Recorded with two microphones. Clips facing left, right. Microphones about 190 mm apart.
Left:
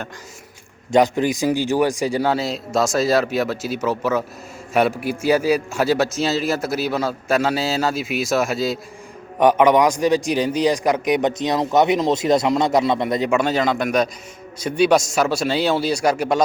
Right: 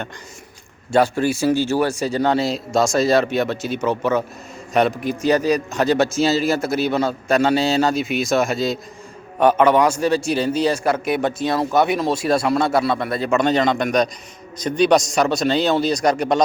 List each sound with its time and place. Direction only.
0.9 s a man's voice: 15° left (ahead or behind)
9.4 s a man's voice: 15° left (ahead or behind)